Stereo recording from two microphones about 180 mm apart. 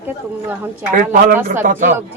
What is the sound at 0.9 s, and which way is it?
Speech, 50° right (ahead or behind).